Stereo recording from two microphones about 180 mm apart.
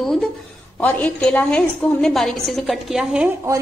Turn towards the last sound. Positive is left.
turn(degrees=-5)  # may be behind; listen again after turning